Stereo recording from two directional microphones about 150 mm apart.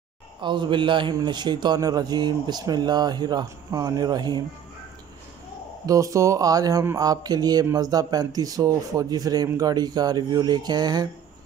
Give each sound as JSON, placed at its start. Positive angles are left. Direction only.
{"t": 0.4, "sound": "a man's voice", "side_deg": -30}
{"t": 5.9, "sound": "a man's voice", "side_deg": -20}